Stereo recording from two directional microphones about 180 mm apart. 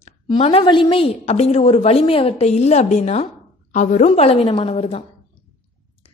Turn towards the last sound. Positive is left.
turn(degrees=35)  # may be behind; listen again after turning